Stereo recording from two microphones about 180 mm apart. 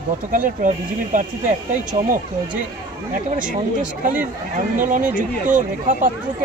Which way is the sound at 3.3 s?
50° right (ahead or behind).